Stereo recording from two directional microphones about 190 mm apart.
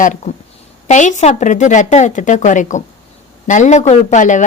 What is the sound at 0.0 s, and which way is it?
A woman's voice, 40° left (ahead or behind).